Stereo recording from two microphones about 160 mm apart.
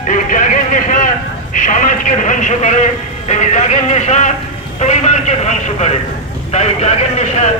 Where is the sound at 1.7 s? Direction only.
55° left (ahead or behind).